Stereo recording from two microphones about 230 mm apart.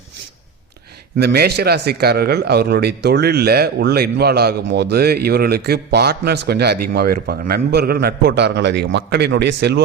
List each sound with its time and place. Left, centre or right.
1.2 s a man's voice: right